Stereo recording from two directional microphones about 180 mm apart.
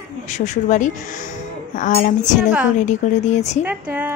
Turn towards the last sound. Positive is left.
turn(degrees=-10)  # may be behind; listen again after turning